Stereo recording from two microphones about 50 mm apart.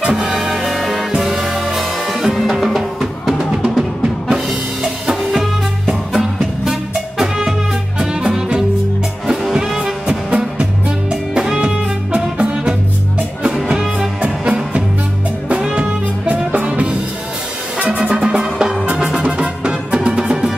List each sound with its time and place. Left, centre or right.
0.4 s music: centre
3.5 s drum: centre
8.0 s music: centre
10.0 s music: centre
14.2 s music: right